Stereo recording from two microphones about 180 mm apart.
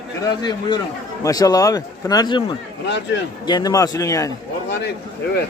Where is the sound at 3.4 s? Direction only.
20° left (ahead or behind).